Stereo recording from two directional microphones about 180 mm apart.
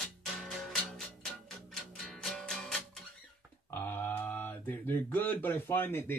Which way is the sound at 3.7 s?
10° left (ahead or behind).